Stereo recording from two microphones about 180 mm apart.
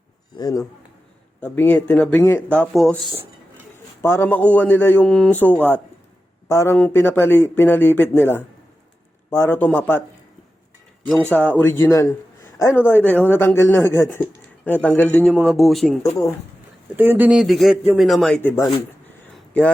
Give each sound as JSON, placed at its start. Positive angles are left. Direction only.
{"t": 0.3, "sound": "speech", "side_deg": 20}
{"t": 4.0, "sound": "speech", "side_deg": 15}
{"t": 11.3, "sound": "speech", "side_deg": 10}
{"t": 17.0, "sound": "speech", "side_deg": -10}